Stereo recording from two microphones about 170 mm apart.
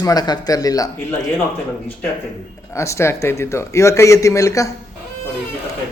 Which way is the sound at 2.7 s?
15° left (ahead or behind).